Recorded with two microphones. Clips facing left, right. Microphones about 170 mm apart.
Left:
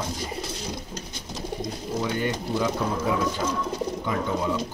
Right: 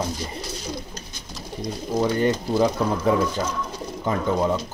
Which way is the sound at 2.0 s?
40° right (ahead or behind).